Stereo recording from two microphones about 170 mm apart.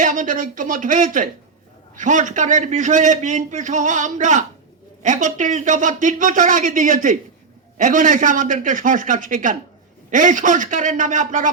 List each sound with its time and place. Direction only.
0.0 s a man's voice: 50° right (ahead or behind)